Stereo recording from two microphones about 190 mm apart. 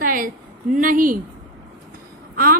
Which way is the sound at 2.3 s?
50° right (ahead or behind).